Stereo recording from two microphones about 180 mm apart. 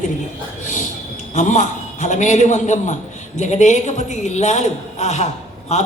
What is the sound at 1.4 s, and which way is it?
A man's voice, 45° left (ahead or behind).